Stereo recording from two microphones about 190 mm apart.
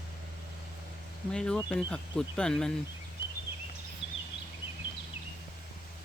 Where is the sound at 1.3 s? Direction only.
5° left (ahead or behind).